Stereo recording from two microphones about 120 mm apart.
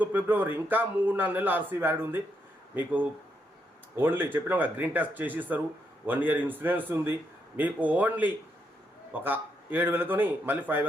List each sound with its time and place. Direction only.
0.0 s a man's voice: 15° right (ahead or behind)